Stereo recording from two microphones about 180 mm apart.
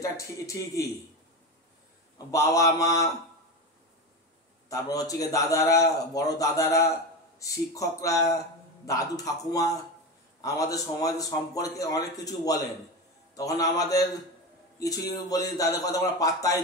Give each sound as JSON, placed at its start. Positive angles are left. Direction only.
{"t": 0.0, "sound": "speech", "side_deg": 15}
{"t": 2.3, "sound": "a man's voice", "side_deg": 20}
{"t": 4.6, "sound": "a man's voice", "side_deg": 20}